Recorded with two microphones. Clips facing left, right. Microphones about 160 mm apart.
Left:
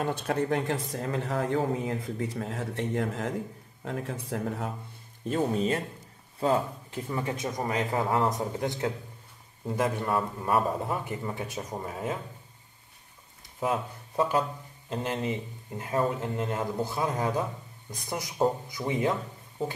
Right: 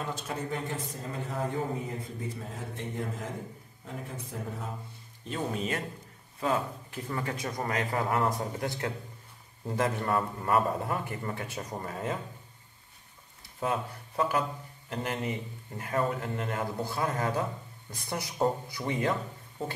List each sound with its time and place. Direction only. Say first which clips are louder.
0.0 s speech: left 7 dB; 60° left (ahead or behind); by 4.6 s 85° left
5.3 s speech: left 6 dB; 35° left (ahead or behind)
9.8 s speech: left 1 dB; 10° left (ahead or behind)
10.9 s speech: left 1 dB; 15° left (ahead or behind)
13.6 s speech: left 2 dB; 20° left (ahead or behind)
18.7 s speech: left 2 dB; 15° left (ahead or behind)